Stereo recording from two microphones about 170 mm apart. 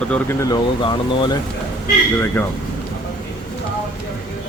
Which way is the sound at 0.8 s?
25° left (ahead or behind).